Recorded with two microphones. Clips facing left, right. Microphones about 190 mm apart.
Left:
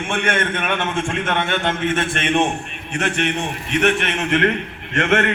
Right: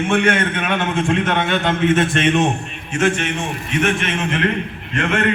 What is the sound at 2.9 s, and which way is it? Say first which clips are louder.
A man's voice: right 3 dB; 65° left (ahead or behind).